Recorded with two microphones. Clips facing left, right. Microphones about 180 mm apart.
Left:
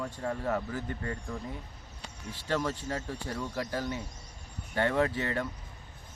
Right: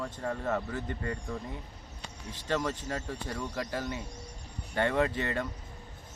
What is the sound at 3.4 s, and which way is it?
Speech, 15° right (ahead or behind).